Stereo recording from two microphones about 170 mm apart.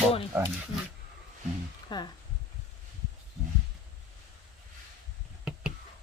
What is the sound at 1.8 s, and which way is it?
Speech, 25° left (ahead or behind).